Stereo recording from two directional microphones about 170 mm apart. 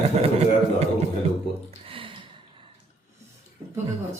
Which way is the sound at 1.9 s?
30° right (ahead or behind).